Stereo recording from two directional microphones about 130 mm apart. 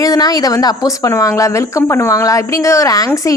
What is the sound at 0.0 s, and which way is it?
A woman's voice, 30° left (ahead or behind).